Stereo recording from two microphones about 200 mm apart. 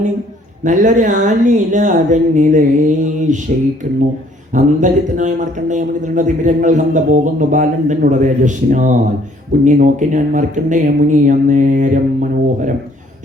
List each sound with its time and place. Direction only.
0.6 s speech: 40° right (ahead or behind)
4.5 s speech: 40° right (ahead or behind)